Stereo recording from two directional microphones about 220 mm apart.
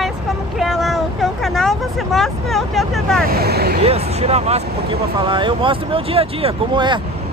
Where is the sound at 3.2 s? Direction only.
45° right (ahead or behind).